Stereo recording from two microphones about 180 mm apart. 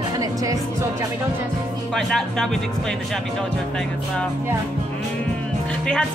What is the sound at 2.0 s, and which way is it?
Speech, centre (ahead or behind).